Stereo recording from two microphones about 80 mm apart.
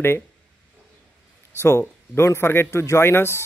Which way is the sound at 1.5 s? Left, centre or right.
Left.